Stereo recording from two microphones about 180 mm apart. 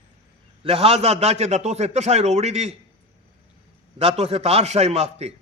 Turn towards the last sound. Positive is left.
turn(degrees=-35)  # may be behind; listen again after turning